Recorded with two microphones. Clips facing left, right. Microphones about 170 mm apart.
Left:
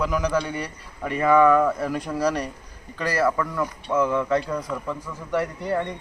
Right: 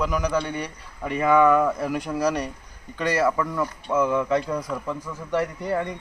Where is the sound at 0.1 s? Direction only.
10° right (ahead or behind).